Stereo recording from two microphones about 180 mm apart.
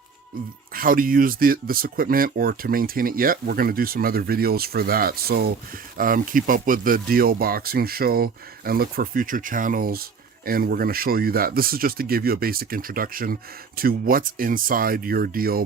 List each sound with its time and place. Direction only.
0.7 s speech: 55° right (ahead or behind)